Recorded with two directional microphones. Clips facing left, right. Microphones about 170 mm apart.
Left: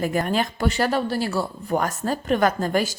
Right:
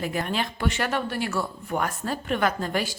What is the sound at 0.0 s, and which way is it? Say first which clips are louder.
Speech: left 5 dB; 45° left (ahead or behind).